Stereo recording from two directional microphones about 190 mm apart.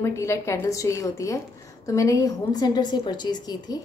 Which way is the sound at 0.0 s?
15° left (ahead or behind).